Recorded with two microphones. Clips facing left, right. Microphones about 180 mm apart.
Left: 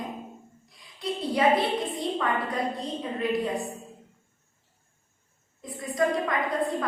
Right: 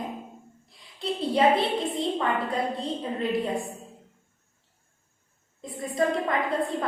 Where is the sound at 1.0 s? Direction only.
25° right (ahead or behind).